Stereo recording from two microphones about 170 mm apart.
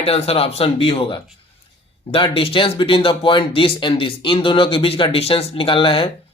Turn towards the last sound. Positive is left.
turn(degrees=30)  # may be behind; listen again after turning